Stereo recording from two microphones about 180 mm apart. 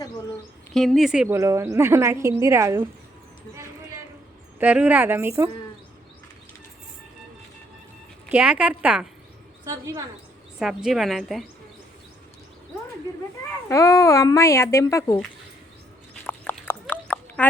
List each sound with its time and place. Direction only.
0.7 s a woman's voice: centre (ahead or behind)
1.4 s speech: 15° right (ahead or behind)
4.6 s speech: 10° right (ahead or behind)
8.3 s speech: 5° right (ahead or behind)
9.6 s speech: 15° right (ahead or behind)
10.6 s a woman's voice: 5° right (ahead or behind)
13.7 s speech: 20° left (ahead or behind)
16.2 s horse: 10° left (ahead or behind)